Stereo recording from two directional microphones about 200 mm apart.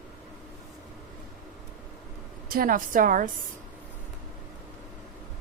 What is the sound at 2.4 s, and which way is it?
Speech, 45° right (ahead or behind).